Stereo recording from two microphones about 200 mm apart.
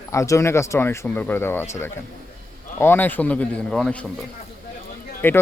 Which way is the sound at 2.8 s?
10° left (ahead or behind).